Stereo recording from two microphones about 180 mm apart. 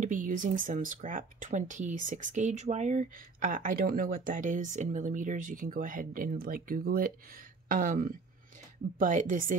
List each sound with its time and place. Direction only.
0.0 s speech: 45° right (ahead or behind)